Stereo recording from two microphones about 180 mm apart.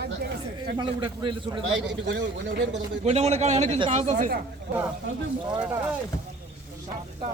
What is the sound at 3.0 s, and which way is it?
A man's voice, 35° right (ahead or behind).